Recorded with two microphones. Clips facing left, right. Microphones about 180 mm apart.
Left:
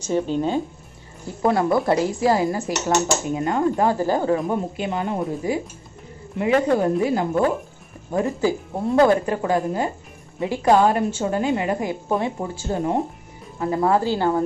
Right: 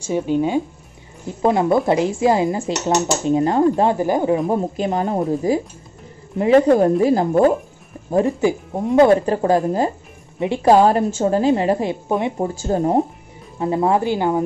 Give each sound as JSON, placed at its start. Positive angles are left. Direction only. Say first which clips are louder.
{"t": 0.0, "sound": "speech", "louder": "right 3 dB", "side_deg": -10}
{"t": 1.2, "sound": "a woman's voice", "louder": "right 3 dB", "side_deg": -20}
{"t": 4.5, "sound": "a woman's voice", "louder": "right 4 dB", "side_deg": -35}
{"t": 8.1, "sound": "a woman's voice", "louder": "right 4 dB", "side_deg": -25}
{"t": 9.2, "sound": "a woman's voice", "louder": "right 5 dB", "side_deg": -35}
{"t": 13.6, "sound": "a woman's voice", "louder": "right 2 dB", "side_deg": -20}